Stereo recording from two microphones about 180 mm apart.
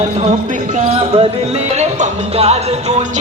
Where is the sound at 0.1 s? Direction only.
40° right (ahead or behind).